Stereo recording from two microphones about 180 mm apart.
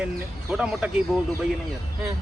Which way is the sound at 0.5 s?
5° right (ahead or behind).